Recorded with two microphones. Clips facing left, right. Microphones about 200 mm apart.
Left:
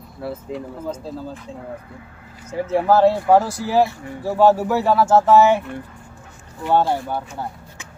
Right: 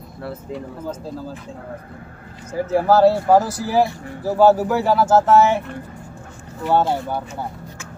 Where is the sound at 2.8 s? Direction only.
5° right (ahead or behind).